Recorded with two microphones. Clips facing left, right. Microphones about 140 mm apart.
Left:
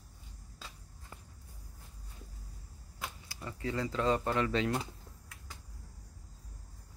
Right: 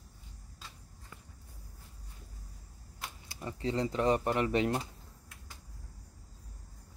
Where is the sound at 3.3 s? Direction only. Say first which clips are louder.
Right 4 dB; 20° right (ahead or behind).